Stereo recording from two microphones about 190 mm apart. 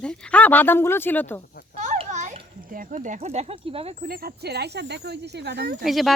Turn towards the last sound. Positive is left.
turn(degrees=0)  # may be behind; listen again after turning